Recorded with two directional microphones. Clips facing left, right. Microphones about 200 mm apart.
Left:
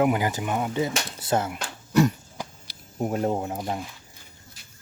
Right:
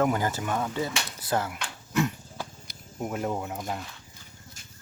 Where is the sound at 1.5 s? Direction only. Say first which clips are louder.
Left 6 dB; 40° left (ahead or behind).